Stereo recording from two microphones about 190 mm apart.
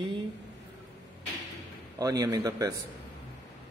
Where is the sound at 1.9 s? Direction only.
20° right (ahead or behind).